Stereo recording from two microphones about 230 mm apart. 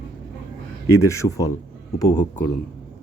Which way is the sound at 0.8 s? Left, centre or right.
Left.